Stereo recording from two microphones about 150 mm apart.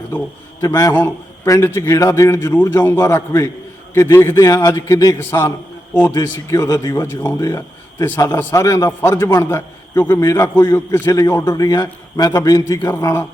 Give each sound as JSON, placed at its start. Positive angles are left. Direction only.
{"t": 0.6, "sound": "a man's voice", "side_deg": 25}
{"t": 5.9, "sound": "speech", "side_deg": 10}
{"t": 6.1, "sound": "a man's voice", "side_deg": 20}